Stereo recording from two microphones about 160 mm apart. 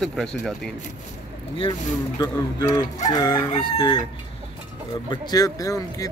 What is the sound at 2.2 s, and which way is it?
Speech, 25° left (ahead or behind).